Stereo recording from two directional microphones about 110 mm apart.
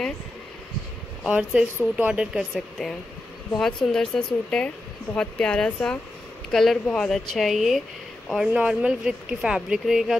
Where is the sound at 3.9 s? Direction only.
5° left (ahead or behind).